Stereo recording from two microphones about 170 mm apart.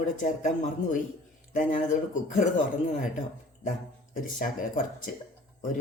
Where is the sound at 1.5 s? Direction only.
50° left (ahead or behind).